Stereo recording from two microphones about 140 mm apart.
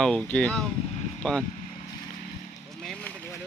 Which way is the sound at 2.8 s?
5° left (ahead or behind).